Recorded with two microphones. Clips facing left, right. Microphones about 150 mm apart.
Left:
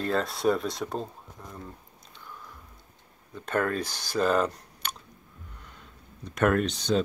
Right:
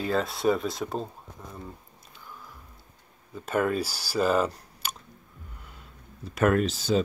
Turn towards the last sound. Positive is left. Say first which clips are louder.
# right 1 dB
turn(degrees=-5)  # may be behind; listen again after turning